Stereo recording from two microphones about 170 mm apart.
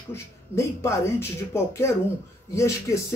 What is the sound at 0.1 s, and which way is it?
Speech, 15° left (ahead or behind).